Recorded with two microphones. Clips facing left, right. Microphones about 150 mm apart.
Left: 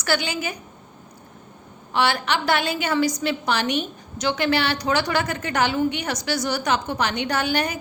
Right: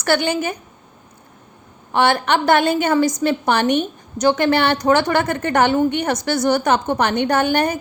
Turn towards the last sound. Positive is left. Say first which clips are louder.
# right 6 dB
turn(degrees=-50)  # may be behind; listen again after turning